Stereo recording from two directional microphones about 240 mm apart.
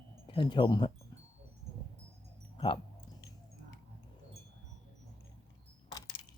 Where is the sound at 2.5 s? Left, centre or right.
Left.